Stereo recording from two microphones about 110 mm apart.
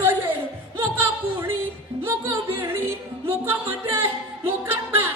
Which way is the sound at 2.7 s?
20° right (ahead or behind).